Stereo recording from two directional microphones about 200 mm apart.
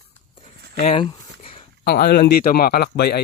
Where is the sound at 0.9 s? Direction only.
25° left (ahead or behind).